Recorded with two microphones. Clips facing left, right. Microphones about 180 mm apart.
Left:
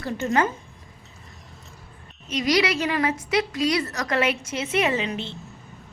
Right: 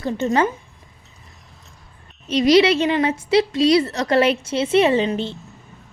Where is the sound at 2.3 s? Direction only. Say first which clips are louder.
Right 8 dB; 30° right (ahead or behind).